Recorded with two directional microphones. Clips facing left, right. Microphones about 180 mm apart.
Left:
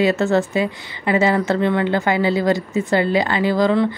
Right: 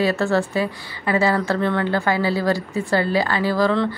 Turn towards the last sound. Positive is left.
turn(degrees=20)  # may be behind; listen again after turning